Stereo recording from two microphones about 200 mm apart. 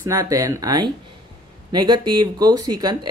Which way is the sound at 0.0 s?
15° right (ahead or behind).